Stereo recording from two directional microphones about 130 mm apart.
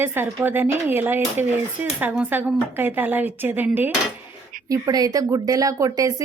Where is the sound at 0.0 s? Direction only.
15° right (ahead or behind).